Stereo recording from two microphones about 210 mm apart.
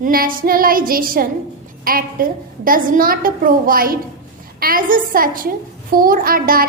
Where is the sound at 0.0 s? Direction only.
45° right (ahead or behind).